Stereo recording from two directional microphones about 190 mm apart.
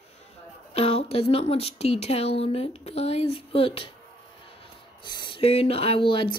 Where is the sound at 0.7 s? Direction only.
30° left (ahead or behind).